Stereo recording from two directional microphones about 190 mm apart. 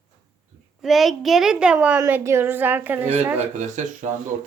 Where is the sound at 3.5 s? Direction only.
40° right (ahead or behind).